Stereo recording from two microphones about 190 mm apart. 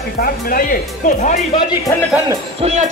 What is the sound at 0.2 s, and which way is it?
Speech, 50° left (ahead or behind).